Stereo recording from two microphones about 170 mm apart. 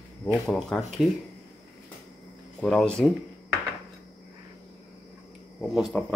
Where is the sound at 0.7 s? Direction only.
5° left (ahead or behind).